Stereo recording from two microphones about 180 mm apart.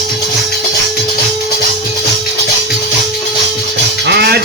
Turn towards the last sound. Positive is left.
turn(degrees=-65)  # may be behind; listen again after turning